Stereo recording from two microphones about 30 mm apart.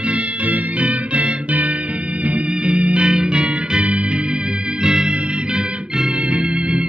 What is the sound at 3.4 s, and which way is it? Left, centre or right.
Music, right.